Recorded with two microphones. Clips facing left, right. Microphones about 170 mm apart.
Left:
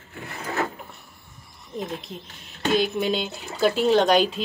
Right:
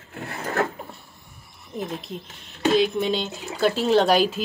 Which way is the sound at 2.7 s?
Centre (ahead or behind).